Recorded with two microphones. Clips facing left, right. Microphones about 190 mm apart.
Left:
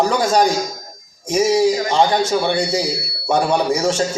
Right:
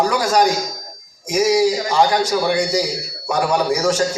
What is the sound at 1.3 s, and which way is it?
A man's voice, 25° left (ahead or behind).